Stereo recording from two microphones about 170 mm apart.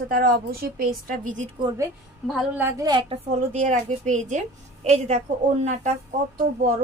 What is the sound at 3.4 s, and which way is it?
Speech, 45° right (ahead or behind).